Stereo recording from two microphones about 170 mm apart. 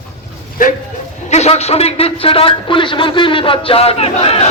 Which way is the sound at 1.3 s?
40° left (ahead or behind).